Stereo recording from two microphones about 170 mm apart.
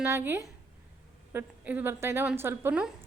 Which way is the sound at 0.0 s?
10° right (ahead or behind).